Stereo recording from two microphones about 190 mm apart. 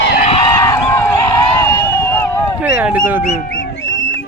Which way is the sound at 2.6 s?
10° right (ahead or behind).